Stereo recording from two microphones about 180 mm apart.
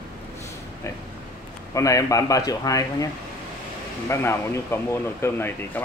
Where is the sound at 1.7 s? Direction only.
15° left (ahead or behind).